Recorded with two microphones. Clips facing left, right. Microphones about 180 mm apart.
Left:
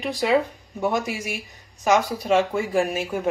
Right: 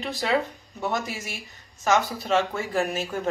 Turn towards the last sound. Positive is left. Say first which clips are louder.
# left 3 dB
turn(degrees=10)  # may be behind; listen again after turning